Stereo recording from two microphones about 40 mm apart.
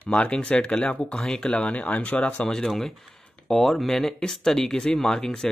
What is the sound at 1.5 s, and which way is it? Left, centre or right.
Speech, left.